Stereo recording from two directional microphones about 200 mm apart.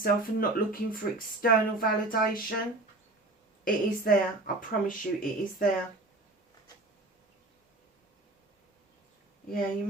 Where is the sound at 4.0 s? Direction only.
45° left (ahead or behind).